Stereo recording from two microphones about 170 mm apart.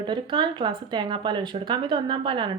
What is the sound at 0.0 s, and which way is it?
Speech, 25° right (ahead or behind).